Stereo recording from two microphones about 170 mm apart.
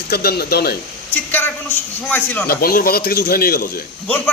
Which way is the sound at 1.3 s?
10° left (ahead or behind).